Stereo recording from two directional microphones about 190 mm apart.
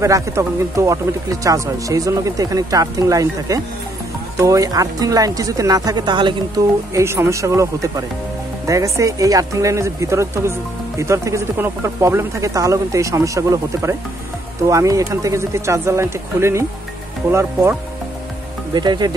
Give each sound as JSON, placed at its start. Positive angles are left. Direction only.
{"t": 0.0, "sound": "speech", "side_deg": -15}